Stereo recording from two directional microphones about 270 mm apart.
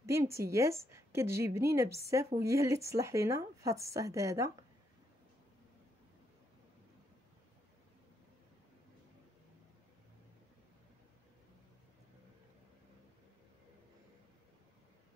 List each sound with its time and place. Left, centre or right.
0.0 s a woman's voice: centre